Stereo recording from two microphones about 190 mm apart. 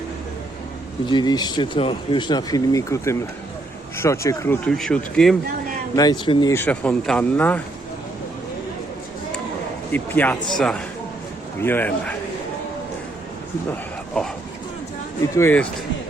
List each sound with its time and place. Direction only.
1.0 s speech: 25° left (ahead or behind); by 5.4 s 5° left (ahead or behind)
6.0 s speech: 25° left (ahead or behind)
6.5 s speech: 10° left (ahead or behind)
9.9 s speech: 10° left (ahead or behind)
14.2 s speech: 5° left (ahead or behind)
15.4 s speech: 10° left (ahead or behind)